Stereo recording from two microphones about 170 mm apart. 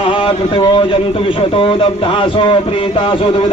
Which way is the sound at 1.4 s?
30° left (ahead or behind).